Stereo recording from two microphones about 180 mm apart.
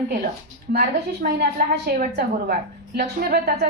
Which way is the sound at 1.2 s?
60° right (ahead or behind).